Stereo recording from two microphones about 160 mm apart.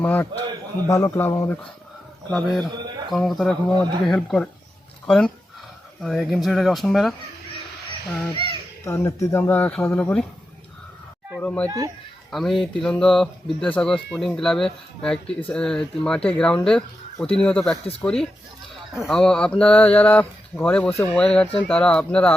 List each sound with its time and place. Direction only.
0.0 s speech: 10° left (ahead or behind)
2.3 s speech: centre (ahead or behind)
8.8 s a child's voice: 15° left (ahead or behind)
11.3 s a sound: 10° left (ahead or behind)
12.3 s speech: centre (ahead or behind)